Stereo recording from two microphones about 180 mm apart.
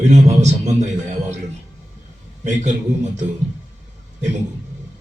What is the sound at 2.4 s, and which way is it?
Speech, 45° right (ahead or behind).